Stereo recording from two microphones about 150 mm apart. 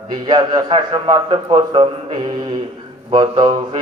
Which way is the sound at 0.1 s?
30° right (ahead or behind).